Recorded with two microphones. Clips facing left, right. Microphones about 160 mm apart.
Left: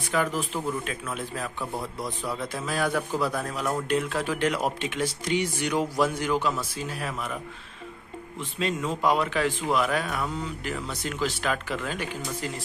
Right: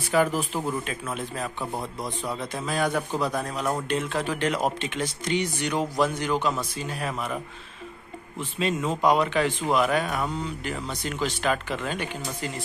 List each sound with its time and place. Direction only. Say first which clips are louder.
0.3 s speech: right 1 dB; 5° right (ahead or behind)
1.4 s a man's voice: right 1 dB; 20° right (ahead or behind)
3.8 s a man's voice: left 1 dB; 5° left (ahead or behind)
8.4 s speech: right 2 dB; 5° right (ahead or behind)